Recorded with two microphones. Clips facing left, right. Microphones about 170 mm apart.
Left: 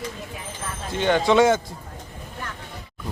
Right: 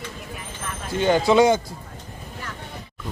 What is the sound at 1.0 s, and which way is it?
Speech, 5° right (ahead or behind).